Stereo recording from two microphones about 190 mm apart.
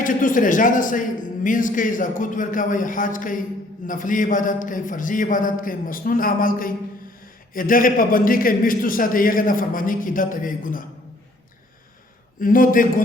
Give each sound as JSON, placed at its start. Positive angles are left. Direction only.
{"t": 0.0, "sound": "a man's voice", "side_deg": 45}
{"t": 12.4, "sound": "a man's voice", "side_deg": 45}